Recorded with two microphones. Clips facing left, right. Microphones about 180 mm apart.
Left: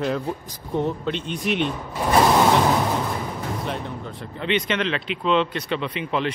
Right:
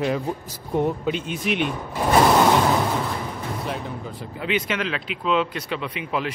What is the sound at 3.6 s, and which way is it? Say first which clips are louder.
A man's voice: even; centre (ahead or behind).